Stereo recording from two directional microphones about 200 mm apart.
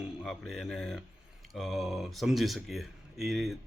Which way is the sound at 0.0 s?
Centre (ahead or behind).